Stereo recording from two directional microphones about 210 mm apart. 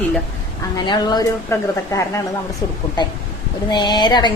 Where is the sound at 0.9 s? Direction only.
20° left (ahead or behind).